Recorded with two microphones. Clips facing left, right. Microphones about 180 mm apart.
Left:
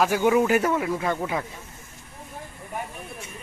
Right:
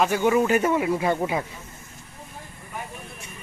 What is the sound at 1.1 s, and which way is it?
Speech, 20° right (ahead or behind).